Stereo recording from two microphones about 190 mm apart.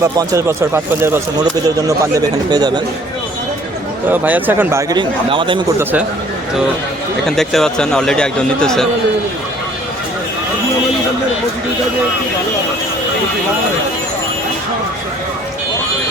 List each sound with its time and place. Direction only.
0.0 s speech: 15° right (ahead or behind)
4.1 s speech: 10° right (ahead or behind); by 5.6 s 25° right (ahead or behind)
5.8 s speech: 10° right (ahead or behind)
7.3 s speech: centre (ahead or behind)